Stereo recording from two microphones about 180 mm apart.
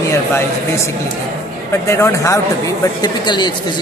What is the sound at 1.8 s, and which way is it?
Speech, 15° left (ahead or behind).